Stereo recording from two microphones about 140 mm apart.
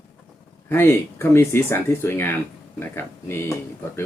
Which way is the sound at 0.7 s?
15° left (ahead or behind).